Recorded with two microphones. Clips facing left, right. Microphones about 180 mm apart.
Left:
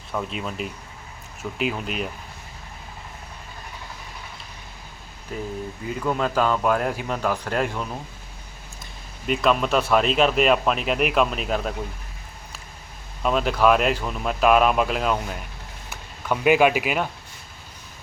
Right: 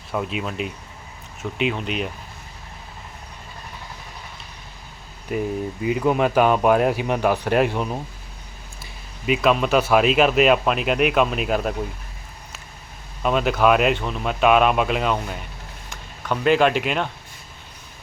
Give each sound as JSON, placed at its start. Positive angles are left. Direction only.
{"t": 0.1, "sound": "speech", "side_deg": -5}
{"t": 6.1, "sound": "speech", "side_deg": -15}
{"t": 8.8, "sound": "a sound", "side_deg": -5}
{"t": 9.9, "sound": "speech", "side_deg": -5}
{"t": 13.2, "sound": "speech", "side_deg": 0}